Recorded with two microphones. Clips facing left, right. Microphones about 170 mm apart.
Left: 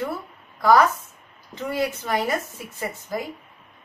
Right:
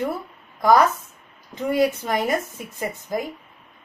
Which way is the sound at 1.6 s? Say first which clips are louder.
Right 5 dB; 15° right (ahead or behind).